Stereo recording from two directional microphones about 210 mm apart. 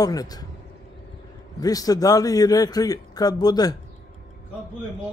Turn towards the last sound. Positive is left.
turn(degrees=20)  # may be behind; listen again after turning